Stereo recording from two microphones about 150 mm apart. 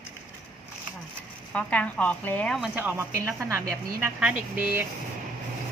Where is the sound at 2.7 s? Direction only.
10° right (ahead or behind).